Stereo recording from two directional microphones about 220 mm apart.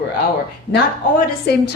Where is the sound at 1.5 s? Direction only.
50° left (ahead or behind).